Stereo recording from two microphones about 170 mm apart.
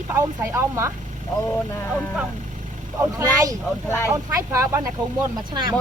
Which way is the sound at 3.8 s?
15° left (ahead or behind).